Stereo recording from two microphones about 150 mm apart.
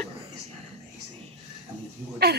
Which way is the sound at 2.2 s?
90° right.